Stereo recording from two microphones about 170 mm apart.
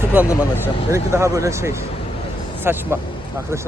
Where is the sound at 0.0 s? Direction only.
10° right (ahead or behind).